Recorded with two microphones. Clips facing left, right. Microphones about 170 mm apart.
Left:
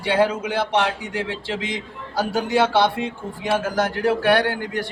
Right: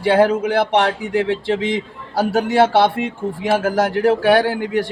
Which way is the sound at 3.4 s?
65° right (ahead or behind).